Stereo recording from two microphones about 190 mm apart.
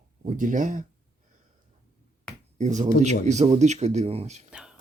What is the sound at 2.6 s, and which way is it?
Speech, 40° right (ahead or behind).